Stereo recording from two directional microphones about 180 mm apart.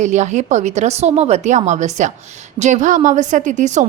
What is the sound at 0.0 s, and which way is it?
A woman's voice, 40° right (ahead or behind).